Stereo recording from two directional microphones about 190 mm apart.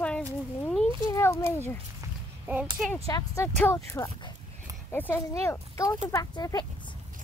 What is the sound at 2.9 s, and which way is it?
Speech, 15° left (ahead or behind).